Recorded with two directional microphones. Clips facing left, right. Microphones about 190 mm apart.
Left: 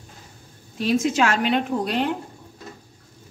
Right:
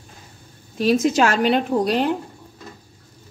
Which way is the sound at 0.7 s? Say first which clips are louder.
Right 3 dB; 40° right (ahead or behind).